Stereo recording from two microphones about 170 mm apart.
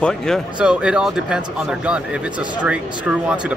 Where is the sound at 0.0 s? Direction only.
5° left (ahead or behind).